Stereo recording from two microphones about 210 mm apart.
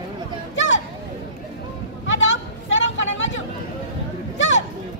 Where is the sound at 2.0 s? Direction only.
65° left (ahead or behind).